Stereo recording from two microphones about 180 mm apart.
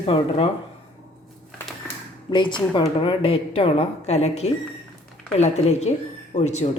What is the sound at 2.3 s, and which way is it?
Speech, 25° left (ahead or behind).